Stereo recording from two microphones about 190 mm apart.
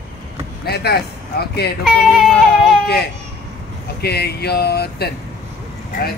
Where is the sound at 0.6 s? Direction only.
55° left (ahead or behind).